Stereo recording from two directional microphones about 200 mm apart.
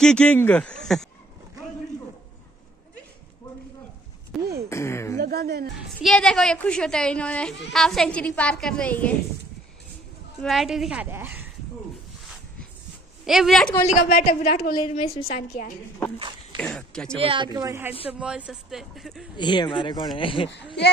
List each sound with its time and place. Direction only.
0.0 s speech: 5° left (ahead or behind)
4.3 s a sound: centre (ahead or behind)
4.6 s speech: 15° left (ahead or behind)
5.2 s speech: 50° right (ahead or behind)
6.0 s speech: 5° left (ahead or behind)
10.4 s speech: centre (ahead or behind)
13.2 s speech: centre (ahead or behind)
14.0 s speech: 40° left (ahead or behind)
14.8 s a woman's voice: 30° left (ahead or behind)
16.5 s speech: 5° left (ahead or behind)
17.2 s speech: 25° right (ahead or behind); by 19.2 s centre (ahead or behind)
19.3 s speech: 20° left (ahead or behind)